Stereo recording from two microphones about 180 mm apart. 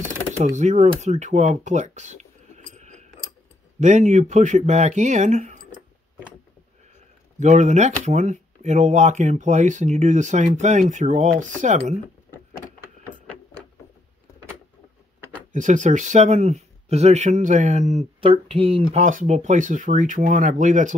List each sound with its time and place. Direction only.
0.6 s speech: 40° right (ahead or behind)
7.3 s speech: 40° right (ahead or behind)
15.5 s speech: 45° right (ahead or behind)